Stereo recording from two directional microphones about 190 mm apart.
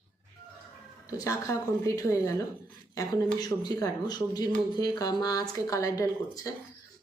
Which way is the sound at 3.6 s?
20° left (ahead or behind).